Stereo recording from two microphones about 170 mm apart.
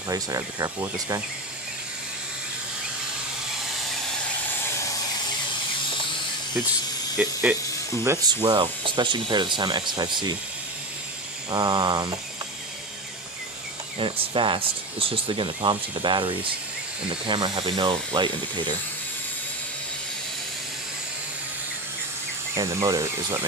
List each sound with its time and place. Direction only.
0.1 s speech: 20° right (ahead or behind)
7.2 s speech: 10° right (ahead or behind)
8.4 s speech: 30° right (ahead or behind)
11.5 s speech: 25° right (ahead or behind)
14.0 s speech: 30° right (ahead or behind)
22.5 s speech: 20° right (ahead or behind)